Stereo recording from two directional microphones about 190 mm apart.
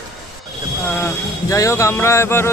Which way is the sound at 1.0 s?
15° left (ahead or behind).